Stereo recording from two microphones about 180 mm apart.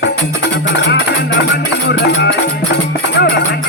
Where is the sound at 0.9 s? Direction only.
75° left (ahead or behind).